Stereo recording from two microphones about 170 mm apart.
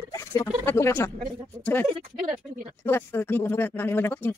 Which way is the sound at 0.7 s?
15° left (ahead or behind).